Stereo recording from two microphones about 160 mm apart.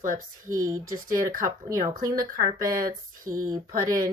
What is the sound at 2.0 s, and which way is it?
Speech, 20° right (ahead or behind).